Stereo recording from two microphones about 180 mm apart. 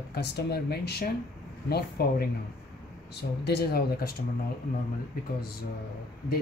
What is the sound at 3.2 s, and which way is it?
Speech, 65° left (ahead or behind).